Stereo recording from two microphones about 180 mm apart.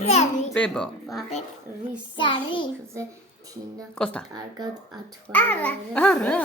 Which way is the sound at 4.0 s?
5° left (ahead or behind).